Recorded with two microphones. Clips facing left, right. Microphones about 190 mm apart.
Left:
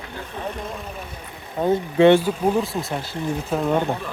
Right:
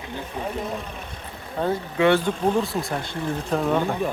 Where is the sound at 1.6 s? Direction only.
10° left (ahead or behind).